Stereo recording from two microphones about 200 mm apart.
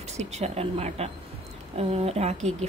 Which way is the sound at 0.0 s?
35° right (ahead or behind).